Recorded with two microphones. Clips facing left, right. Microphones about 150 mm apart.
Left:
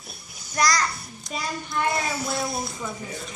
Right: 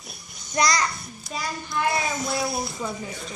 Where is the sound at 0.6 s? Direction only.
15° right (ahead or behind).